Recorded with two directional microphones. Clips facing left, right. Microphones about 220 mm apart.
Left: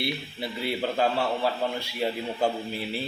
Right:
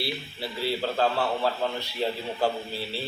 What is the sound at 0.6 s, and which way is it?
A man's voice, 15° left (ahead or behind).